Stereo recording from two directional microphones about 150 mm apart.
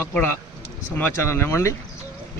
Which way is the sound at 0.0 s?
10° left (ahead or behind).